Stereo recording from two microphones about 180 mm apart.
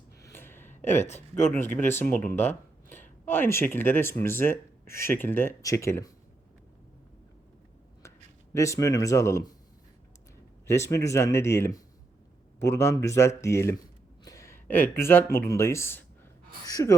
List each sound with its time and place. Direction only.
0.2 s a sound: 15° left (ahead or behind)
0.8 s speech: 15° left (ahead or behind)
8.5 s speech: 15° left (ahead or behind)
10.7 s speech: 15° left (ahead or behind)